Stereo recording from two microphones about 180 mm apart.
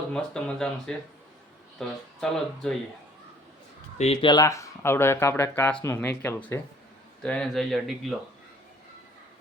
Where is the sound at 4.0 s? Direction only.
35° left (ahead or behind).